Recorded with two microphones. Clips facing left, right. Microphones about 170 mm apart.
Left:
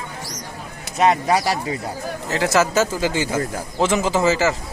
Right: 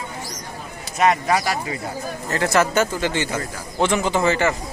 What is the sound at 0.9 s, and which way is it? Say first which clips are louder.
Speech: left 1 dB; 30° left (ahead or behind).